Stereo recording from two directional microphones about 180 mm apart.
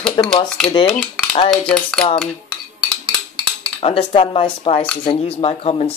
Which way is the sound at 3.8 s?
30° left (ahead or behind).